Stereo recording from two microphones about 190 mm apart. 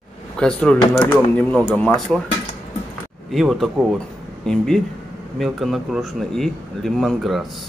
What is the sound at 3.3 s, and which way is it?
Speech, centre (ahead or behind).